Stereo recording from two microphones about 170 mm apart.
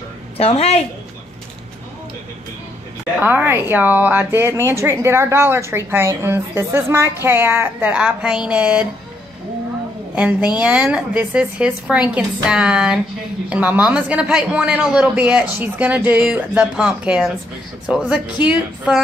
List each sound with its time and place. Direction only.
0.4 s a woman's voice: 35° left (ahead or behind)
3.2 s a woman's voice: 10° right (ahead or behind)
10.1 s a woman's voice: 5° right (ahead or behind)